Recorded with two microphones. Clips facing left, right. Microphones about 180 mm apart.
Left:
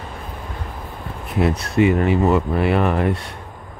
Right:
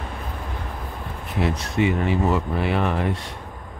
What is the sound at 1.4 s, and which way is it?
Speech, 55° left (ahead or behind).